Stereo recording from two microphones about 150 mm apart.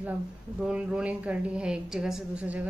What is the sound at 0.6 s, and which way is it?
A woman's voice, 5° right (ahead or behind).